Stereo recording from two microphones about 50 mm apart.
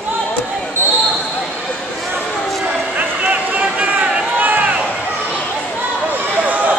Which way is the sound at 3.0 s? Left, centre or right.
Right.